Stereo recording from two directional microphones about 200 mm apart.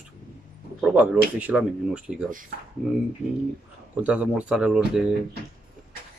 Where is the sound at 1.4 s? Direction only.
5° right (ahead or behind).